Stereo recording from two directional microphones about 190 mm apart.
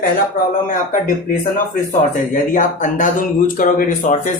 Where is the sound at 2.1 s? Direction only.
40° left (ahead or behind).